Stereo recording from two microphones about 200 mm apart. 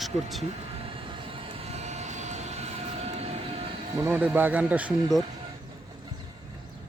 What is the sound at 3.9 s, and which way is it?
Speech, 15° right (ahead or behind).